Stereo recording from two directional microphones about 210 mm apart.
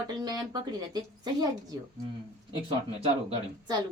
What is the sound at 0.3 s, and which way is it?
Speech, 20° right (ahead or behind).